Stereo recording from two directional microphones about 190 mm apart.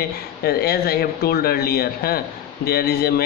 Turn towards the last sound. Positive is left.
turn(degrees=55)  # may be behind; listen again after turning